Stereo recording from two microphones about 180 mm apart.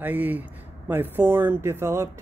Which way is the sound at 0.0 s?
10° right (ahead or behind).